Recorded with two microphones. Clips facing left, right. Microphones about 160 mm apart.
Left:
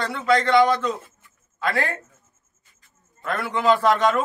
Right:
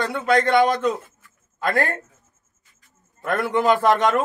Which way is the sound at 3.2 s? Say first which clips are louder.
Right 2 dB; 50° right (ahead or behind).